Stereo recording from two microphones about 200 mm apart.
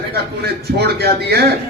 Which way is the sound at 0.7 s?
55° right (ahead or behind).